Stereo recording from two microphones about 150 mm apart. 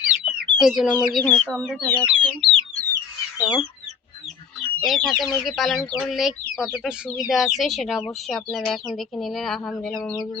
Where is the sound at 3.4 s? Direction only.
Centre (ahead or behind).